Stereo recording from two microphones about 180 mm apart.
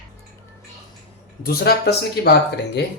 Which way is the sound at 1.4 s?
60° left (ahead or behind).